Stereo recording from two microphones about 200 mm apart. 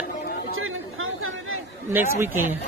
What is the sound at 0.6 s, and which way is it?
Chatter, 90° right.